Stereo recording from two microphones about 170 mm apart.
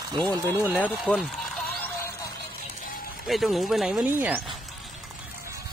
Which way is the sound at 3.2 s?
Centre (ahead or behind).